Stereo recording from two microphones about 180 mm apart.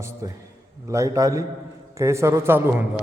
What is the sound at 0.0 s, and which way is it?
A man's voice, 15° right (ahead or behind).